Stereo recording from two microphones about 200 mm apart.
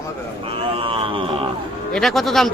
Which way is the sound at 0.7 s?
25° right (ahead or behind).